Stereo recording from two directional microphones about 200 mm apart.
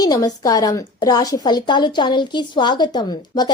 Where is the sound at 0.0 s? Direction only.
20° left (ahead or behind).